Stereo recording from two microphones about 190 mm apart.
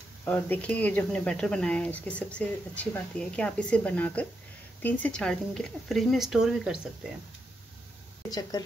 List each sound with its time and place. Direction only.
0.2 s speech: 5° left (ahead or behind)
8.3 s a woman's voice: 20° left (ahead or behind)